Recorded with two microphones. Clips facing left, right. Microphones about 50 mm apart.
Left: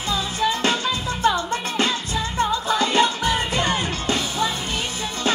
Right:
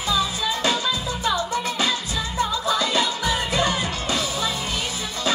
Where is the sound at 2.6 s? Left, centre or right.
Left.